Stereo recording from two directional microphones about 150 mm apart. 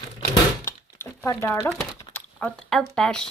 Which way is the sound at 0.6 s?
20° left (ahead or behind).